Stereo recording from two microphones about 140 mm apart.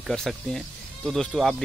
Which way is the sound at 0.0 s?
Centre (ahead or behind).